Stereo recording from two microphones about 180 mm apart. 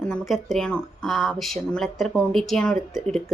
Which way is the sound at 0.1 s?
Centre (ahead or behind).